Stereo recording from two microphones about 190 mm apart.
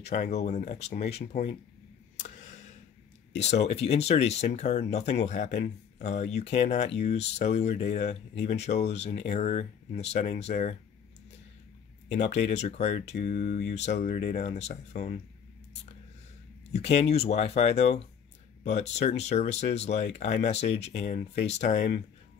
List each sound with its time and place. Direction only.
0.0 s speech: 40° left (ahead or behind)
2.1 s a sound: 40° left (ahead or behind)
3.3 s speech: 35° left (ahead or behind)
12.1 s speech: 35° left (ahead or behind)
16.7 s speech: 35° left (ahead or behind)